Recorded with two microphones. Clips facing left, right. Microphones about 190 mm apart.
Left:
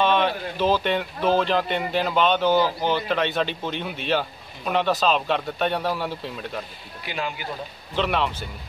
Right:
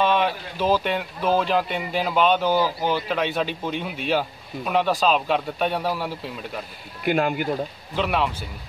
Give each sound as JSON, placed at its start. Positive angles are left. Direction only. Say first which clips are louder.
{"t": 0.0, "sound": "speech", "louder": "even", "side_deg": -5}
{"t": 7.1, "sound": "speech", "louder": "right 9 dB", "side_deg": -50}
{"t": 7.9, "sound": "speech", "louder": "even", "side_deg": -5}